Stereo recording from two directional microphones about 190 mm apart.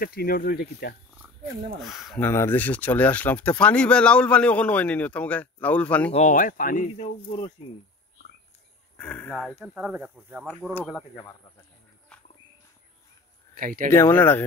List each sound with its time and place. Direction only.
0.0 s speech: 50° left (ahead or behind)
1.1 s roaring cats: 10° right (ahead or behind)
1.8 s speech: centre (ahead or behind)
2.2 s speech: 10° left (ahead or behind)
6.1 s speech: 40° left (ahead or behind)
8.9 s speech: 5° left (ahead or behind)
9.6 s speech: 5° right (ahead or behind)
12.1 s a sound: 5° left (ahead or behind)
13.6 s speech: 45° right (ahead or behind)
13.8 s speech: 15° left (ahead or behind)